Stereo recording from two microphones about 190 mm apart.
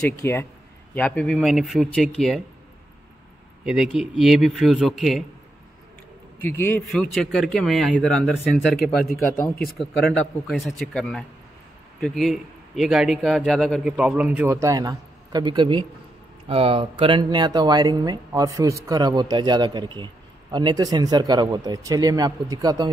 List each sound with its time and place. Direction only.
0.2 s a man's voice: 10° left (ahead or behind)
3.6 s a man's voice: 5° right (ahead or behind)
6.4 s a man's voice: 10° left (ahead or behind)
9.1 s speech: 50° left (ahead or behind)
9.8 s a man's voice: 5° left (ahead or behind); by 22.8 s 20° right (ahead or behind)